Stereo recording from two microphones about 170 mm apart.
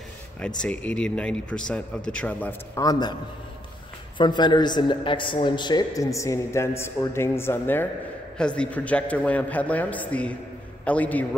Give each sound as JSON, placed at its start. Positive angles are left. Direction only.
{"t": 0.6, "sound": "a man's voice", "side_deg": 5}
{"t": 2.8, "sound": "a woman's voice", "side_deg": 25}
{"t": 4.2, "sound": "a woman's voice", "side_deg": 25}